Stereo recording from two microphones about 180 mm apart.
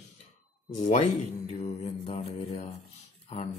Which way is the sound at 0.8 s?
35° left (ahead or behind).